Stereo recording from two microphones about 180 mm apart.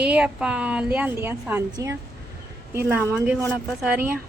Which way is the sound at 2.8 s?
15° right (ahead or behind).